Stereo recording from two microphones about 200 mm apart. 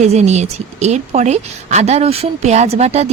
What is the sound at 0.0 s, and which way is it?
A woman's voice, 35° right (ahead or behind).